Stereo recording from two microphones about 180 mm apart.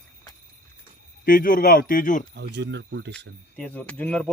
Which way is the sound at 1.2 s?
50° left (ahead or behind).